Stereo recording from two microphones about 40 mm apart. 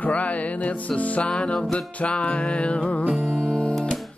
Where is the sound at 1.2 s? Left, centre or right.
Left.